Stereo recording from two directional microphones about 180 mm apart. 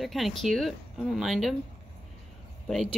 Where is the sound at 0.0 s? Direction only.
Centre (ahead or behind).